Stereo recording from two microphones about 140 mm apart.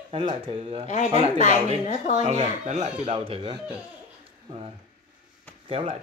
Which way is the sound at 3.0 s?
40° right (ahead or behind).